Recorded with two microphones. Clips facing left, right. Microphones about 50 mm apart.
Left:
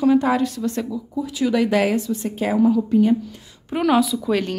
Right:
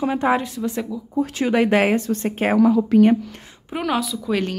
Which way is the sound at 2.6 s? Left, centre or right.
Right.